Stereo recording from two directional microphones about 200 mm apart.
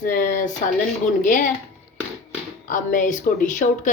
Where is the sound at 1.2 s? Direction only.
40° left (ahead or behind).